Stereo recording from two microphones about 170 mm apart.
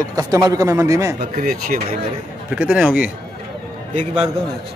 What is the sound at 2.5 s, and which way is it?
Speech, 5° right (ahead or behind).